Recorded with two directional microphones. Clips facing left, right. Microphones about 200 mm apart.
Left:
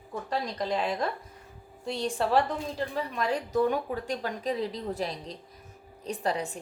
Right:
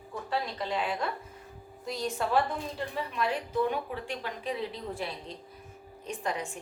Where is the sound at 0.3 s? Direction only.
40° left (ahead or behind).